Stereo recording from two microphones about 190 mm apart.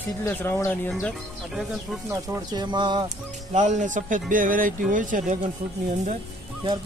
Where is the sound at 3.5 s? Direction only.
40° right (ahead or behind).